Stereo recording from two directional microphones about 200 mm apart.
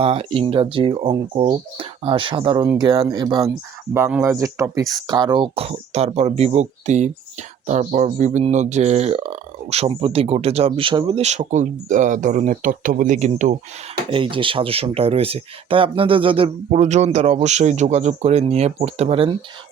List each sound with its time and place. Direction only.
0.0 s speech: 30° right (ahead or behind)
14.1 s speech: 25° right (ahead or behind)